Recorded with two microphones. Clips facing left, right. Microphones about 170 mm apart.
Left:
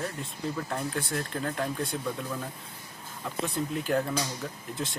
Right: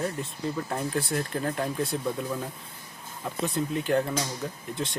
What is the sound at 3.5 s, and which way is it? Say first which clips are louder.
Speech: right 3 dB; centre (ahead or behind).